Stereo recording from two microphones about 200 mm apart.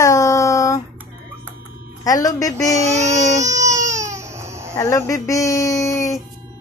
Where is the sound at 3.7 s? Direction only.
15° right (ahead or behind).